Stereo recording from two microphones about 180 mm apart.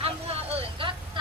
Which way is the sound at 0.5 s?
30° right (ahead or behind).